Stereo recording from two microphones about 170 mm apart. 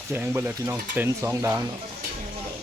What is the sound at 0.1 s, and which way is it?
Speech, 15° right (ahead or behind).